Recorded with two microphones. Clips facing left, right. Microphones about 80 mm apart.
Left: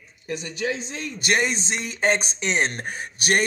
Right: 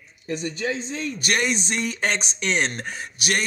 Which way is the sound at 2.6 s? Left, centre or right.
Left.